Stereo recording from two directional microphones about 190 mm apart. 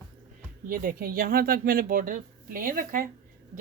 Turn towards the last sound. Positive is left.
turn(degrees=-45)  # may be behind; listen again after turning